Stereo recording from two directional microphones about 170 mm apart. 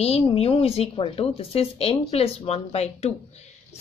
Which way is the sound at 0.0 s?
35° left (ahead or behind).